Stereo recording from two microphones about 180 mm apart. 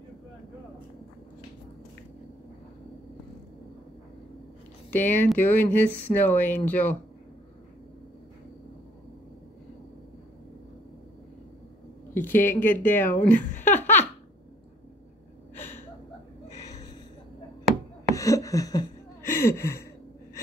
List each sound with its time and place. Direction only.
4.9 s speech: 10° left (ahead or behind)
12.3 s speech: 10° left (ahead or behind)
13.5 s laughter: 45° left (ahead or behind)
13.7 s baby laughter: 10° left (ahead or behind)
18.1 s a sound: 20° left (ahead or behind)